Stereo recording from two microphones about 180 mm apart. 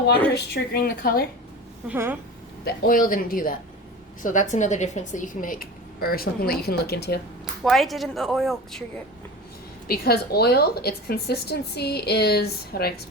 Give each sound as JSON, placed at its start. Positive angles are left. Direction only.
{"t": 0.3, "sound": "a woman's voice", "side_deg": 60}
{"t": 1.9, "sound": "a woman's voice", "side_deg": -10}
{"t": 2.6, "sound": "speech", "side_deg": 50}
{"t": 7.6, "sound": "a woman's voice", "side_deg": 0}
{"t": 9.8, "sound": "a woman's voice", "side_deg": 55}